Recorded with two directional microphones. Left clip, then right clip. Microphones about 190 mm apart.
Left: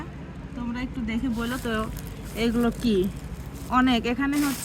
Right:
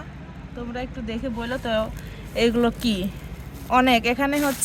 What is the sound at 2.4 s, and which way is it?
Speech, 65° right (ahead or behind).